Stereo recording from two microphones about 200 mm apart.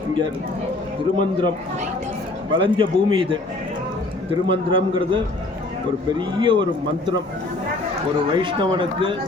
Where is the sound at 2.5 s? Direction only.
25° right (ahead or behind).